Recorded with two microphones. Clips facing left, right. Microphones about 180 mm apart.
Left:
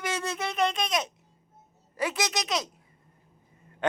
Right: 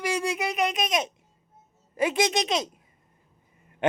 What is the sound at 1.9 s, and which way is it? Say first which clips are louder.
Speech: right 6 dB; 25° right (ahead or behind).